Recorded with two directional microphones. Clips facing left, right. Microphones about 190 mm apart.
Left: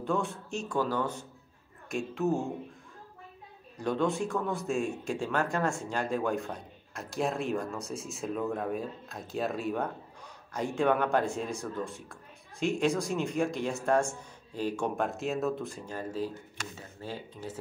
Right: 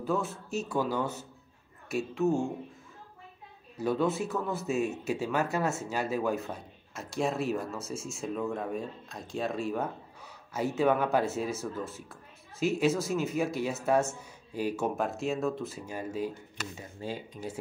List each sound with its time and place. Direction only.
0.0 s speech: 5° right (ahead or behind)
3.7 s speech: 5° right (ahead or behind)